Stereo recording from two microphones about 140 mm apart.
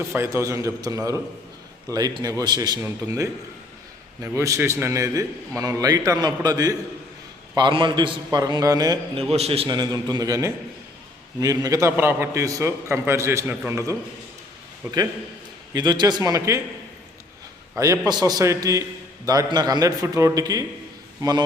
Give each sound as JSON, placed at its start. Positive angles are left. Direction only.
{"t": 0.1, "sound": "a man's voice", "side_deg": -15}
{"t": 9.3, "sound": "a man's voice", "side_deg": -45}
{"t": 9.6, "sound": "a man's voice", "side_deg": -30}
{"t": 15.7, "sound": "a man's voice", "side_deg": -30}
{"t": 17.7, "sound": "a man's voice", "side_deg": -20}